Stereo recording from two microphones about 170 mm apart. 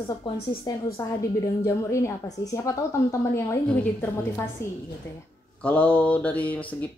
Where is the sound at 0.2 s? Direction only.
30° left (ahead or behind).